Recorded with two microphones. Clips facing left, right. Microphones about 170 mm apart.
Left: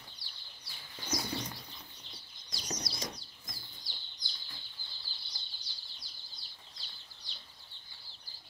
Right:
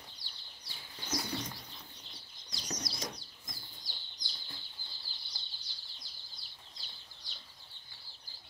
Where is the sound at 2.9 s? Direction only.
20° right (ahead or behind).